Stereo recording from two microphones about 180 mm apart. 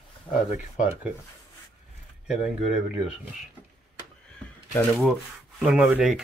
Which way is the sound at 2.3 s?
5° right (ahead or behind).